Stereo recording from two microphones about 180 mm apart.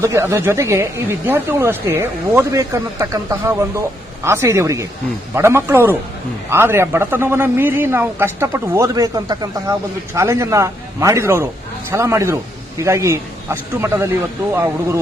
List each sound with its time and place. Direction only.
0.0 s speech: 15° right (ahead or behind)